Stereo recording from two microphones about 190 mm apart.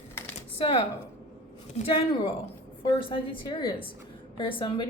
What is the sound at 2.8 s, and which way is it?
A woman's voice, 25° left (ahead or behind).